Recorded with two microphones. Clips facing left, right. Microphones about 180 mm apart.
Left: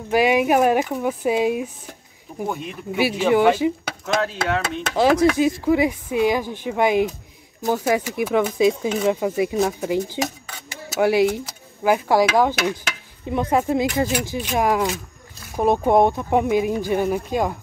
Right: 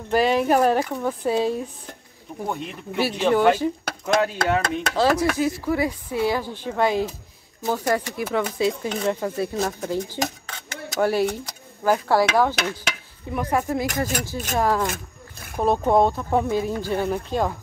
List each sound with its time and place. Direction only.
0.1 s speech: 10° left (ahead or behind)
4.1 s speech: centre (ahead or behind)
4.9 s speech: 15° left (ahead or behind)
7.6 s speech: 5° left (ahead or behind)
7.9 s speech: 15° left (ahead or behind)
8.9 s speech: 5° left (ahead or behind)
9.2 s speech: 15° left (ahead or behind)
10.1 s speech: 5° left (ahead or behind)
14.9 s a sound: 55° right (ahead or behind)
15.6 s speech: 15° left (ahead or behind)